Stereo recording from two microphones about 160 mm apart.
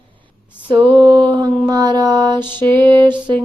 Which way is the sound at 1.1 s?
30° right (ahead or behind).